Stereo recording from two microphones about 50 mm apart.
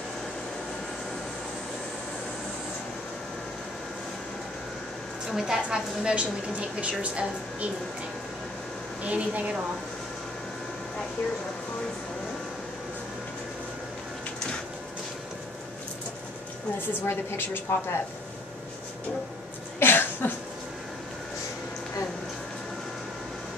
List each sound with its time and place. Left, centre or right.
5.3 s a woman's voice: centre
6.8 s a woman's voice: right
9.0 s a woman's voice: right
17.0 s a woman's voice: left
19.8 s a sound: left